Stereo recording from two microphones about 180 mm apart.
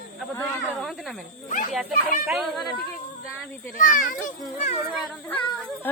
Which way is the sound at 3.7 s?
50° left (ahead or behind).